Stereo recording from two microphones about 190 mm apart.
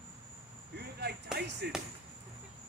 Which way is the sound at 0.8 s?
60° right (ahead or behind).